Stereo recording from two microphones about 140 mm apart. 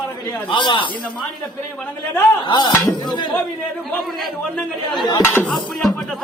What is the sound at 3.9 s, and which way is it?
Speech, 5° left (ahead or behind).